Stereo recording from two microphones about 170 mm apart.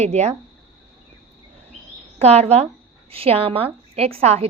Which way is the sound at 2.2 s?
40° right (ahead or behind).